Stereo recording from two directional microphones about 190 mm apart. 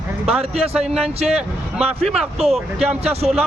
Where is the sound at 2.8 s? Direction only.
35° right (ahead or behind).